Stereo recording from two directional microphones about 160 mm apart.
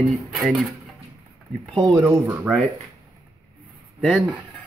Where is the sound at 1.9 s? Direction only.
15° right (ahead or behind).